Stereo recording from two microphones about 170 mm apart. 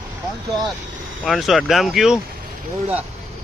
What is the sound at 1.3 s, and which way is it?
Speech, centre (ahead or behind).